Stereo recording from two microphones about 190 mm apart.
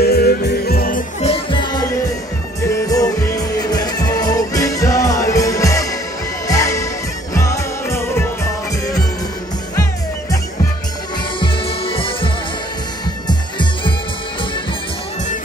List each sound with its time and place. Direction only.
0.0 s music: 55° left (ahead or behind)
1.2 s music: 30° left (ahead or behind)
11.3 s music: 25° left (ahead or behind)
13.3 s music: 25° left (ahead or behind)